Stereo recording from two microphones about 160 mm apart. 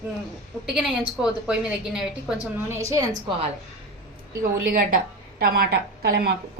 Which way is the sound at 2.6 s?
20° right (ahead or behind).